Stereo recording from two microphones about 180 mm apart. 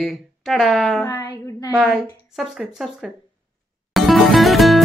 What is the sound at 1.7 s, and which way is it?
Speech, centre (ahead or behind).